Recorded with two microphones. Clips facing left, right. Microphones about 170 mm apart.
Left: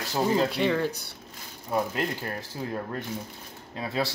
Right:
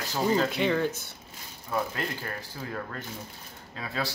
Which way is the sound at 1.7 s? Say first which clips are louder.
Left 3 dB; 20° left (ahead or behind).